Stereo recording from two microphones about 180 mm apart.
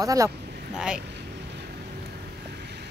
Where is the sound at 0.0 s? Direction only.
20° right (ahead or behind).